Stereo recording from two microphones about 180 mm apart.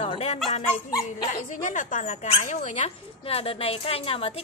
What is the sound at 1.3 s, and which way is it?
Speech, 45° left (ahead or behind).